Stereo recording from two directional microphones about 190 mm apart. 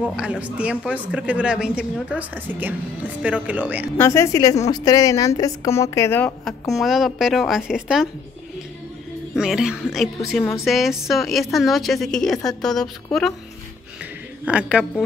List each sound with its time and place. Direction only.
0.0 s a woman's voice: 5° right (ahead or behind)
4.0 s a woman's voice: 15° left (ahead or behind); by 8.1 s 5° right (ahead or behind)
9.3 s a woman's voice: centre (ahead or behind)
14.4 s a woman's voice: 5° right (ahead or behind)